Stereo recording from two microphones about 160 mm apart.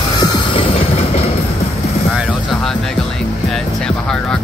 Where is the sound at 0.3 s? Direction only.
35° left (ahead or behind).